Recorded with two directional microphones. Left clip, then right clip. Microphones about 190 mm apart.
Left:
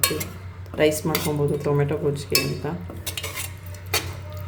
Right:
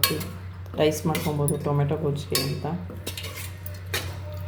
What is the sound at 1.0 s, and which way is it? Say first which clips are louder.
Speech: left 3 dB; 20° left (ahead or behind).